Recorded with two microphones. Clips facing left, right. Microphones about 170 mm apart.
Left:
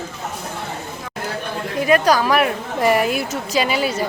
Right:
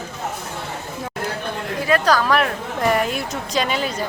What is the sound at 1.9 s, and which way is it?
A woman's voice, 10° left (ahead or behind).